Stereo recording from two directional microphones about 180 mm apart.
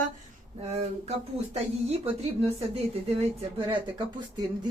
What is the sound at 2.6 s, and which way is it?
Speech, 35° right (ahead or behind).